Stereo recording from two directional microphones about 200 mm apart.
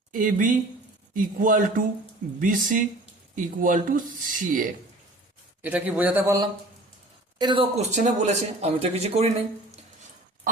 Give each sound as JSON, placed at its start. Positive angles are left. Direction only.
{"t": 0.1, "sound": "speech", "side_deg": -40}
{"t": 5.6, "sound": "a man's voice", "side_deg": -10}